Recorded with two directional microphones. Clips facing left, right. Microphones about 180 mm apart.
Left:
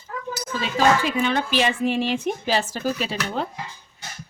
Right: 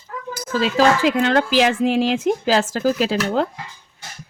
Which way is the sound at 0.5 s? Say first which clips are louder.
Right 4 dB; 90° right.